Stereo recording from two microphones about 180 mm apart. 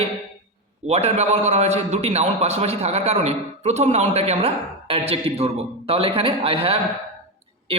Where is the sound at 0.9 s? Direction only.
35° right (ahead or behind).